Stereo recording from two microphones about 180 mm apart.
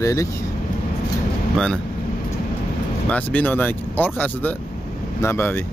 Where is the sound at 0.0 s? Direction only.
15° left (ahead or behind).